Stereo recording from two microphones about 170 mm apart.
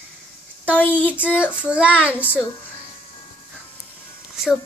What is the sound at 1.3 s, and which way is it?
Child singing, 5° right (ahead or behind).